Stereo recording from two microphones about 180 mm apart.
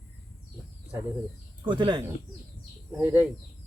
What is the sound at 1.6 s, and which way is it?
Speech, 25° right (ahead or behind).